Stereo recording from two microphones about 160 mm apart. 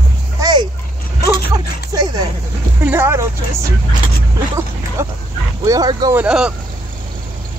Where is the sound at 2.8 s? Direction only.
15° right (ahead or behind).